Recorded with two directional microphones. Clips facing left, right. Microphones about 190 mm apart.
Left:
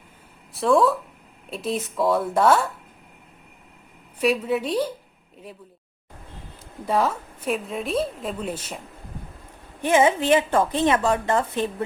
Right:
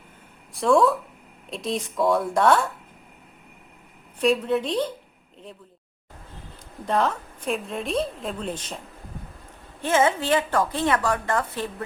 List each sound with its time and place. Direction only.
0.5 s a woman's voice: centre (ahead or behind)
4.2 s speech: 5° left (ahead or behind)
6.8 s a woman's voice: 5° left (ahead or behind)
9.8 s a woman's voice: 15° left (ahead or behind)